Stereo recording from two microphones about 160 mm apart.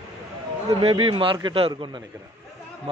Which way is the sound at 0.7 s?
35° right (ahead or behind).